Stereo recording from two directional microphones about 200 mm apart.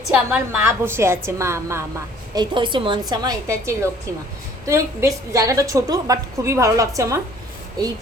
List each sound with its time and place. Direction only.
0.1 s a woman's voice: 10° right (ahead or behind)